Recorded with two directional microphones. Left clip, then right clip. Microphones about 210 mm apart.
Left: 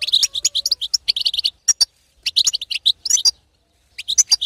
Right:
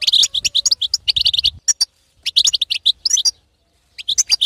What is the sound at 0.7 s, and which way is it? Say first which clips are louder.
Bird: right 3 dB; 15° right (ahead or behind).